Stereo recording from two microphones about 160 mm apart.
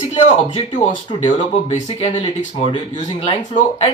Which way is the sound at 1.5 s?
50° left (ahead or behind).